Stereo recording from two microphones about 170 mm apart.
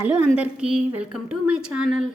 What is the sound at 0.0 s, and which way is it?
A woman's voice, 10° right (ahead or behind).